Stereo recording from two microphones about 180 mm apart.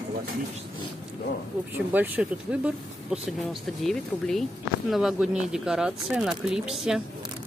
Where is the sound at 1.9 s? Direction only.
10° right (ahead or behind).